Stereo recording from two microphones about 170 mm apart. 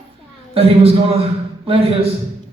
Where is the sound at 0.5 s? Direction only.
35° right (ahead or behind).